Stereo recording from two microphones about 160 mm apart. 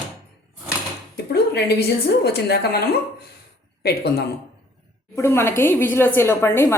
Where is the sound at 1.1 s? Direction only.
80° left.